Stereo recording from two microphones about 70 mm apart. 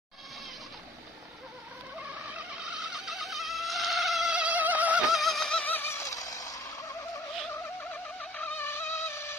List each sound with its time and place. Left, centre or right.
2.0 s vehicle: centre
2.8 s mosquito: centre
4.3 s mosquito: centre
5.1 s a sound: centre
5.6 s a sound: left
6.0 s turkey: left
8.2 s music: left
8.5 s music: left